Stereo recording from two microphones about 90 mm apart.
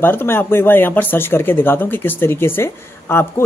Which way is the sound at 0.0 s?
25° left (ahead or behind).